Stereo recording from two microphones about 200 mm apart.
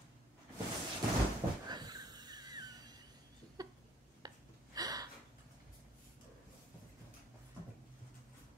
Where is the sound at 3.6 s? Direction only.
20° right (ahead or behind).